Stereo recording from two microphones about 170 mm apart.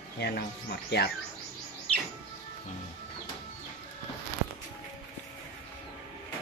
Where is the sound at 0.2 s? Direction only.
70° left (ahead or behind).